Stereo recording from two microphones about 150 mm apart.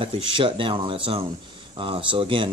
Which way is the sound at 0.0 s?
35° right (ahead or behind).